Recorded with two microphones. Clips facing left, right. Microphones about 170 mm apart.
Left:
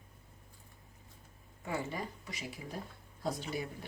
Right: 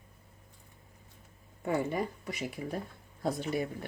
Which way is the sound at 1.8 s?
60° right (ahead or behind).